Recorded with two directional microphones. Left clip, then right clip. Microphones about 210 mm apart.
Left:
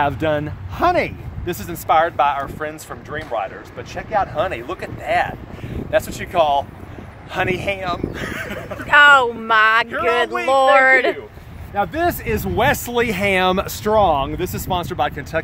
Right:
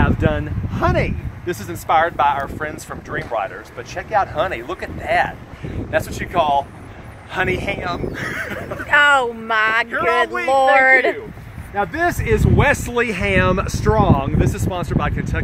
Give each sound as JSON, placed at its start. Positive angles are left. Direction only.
{"t": 0.0, "sound": "speech", "side_deg": 50}
{"t": 2.9, "sound": "speech", "side_deg": 5}
{"t": 5.9, "sound": "speech", "side_deg": 40}
{"t": 10.8, "sound": "speech", "side_deg": 0}
{"t": 11.7, "sound": "speech", "side_deg": 35}